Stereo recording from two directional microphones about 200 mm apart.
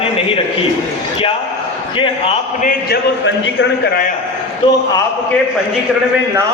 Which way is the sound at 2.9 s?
55° left (ahead or behind).